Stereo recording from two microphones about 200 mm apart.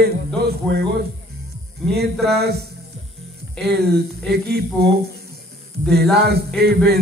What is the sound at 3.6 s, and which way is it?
Speech, 55° right (ahead or behind).